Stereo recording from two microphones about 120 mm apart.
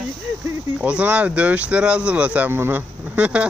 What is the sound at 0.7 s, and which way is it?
Speech, 10° right (ahead or behind).